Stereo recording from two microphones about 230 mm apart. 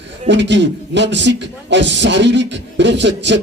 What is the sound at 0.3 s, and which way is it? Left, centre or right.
A man's voice, right.